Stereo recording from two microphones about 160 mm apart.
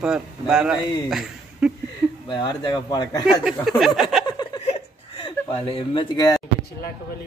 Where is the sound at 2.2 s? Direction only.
30° left (ahead or behind).